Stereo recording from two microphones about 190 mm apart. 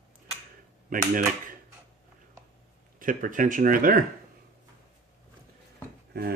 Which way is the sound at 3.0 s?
45° right (ahead or behind).